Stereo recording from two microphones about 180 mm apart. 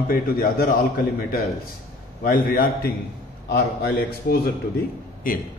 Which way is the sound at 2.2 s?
50° left (ahead or behind).